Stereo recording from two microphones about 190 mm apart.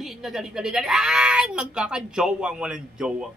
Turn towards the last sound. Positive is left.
turn(degrees=-5)  # may be behind; listen again after turning